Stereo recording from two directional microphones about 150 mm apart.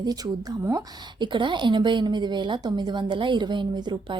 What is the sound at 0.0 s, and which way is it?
A woman's voice, 25° right (ahead or behind).